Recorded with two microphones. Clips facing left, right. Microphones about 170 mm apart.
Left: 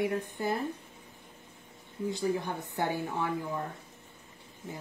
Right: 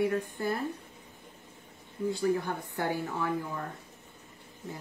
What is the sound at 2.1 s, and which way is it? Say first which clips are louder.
Speech: right 2 dB; 20° left (ahead or behind).